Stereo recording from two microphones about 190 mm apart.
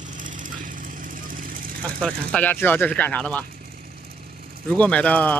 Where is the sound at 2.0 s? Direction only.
5° left (ahead or behind).